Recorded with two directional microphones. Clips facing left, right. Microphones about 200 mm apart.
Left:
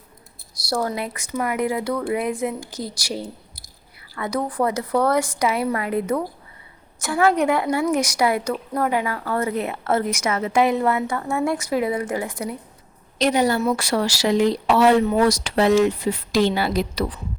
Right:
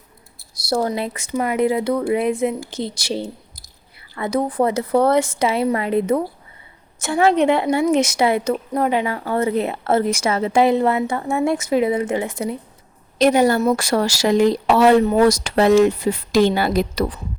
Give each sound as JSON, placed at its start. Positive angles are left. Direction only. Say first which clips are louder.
{"t": 0.7, "sound": "a woman's voice", "louder": "right 4 dB", "side_deg": -25}
{"t": 13.1, "sound": "speech", "louder": "right 4 dB", "side_deg": -50}